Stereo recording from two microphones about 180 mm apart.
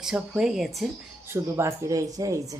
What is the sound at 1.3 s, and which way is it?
Speech, 15° right (ahead or behind).